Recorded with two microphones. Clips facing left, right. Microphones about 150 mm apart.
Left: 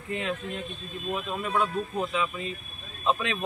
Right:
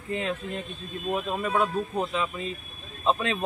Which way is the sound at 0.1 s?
35° right (ahead or behind).